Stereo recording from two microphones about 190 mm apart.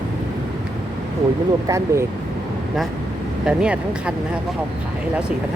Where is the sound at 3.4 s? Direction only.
5° right (ahead or behind).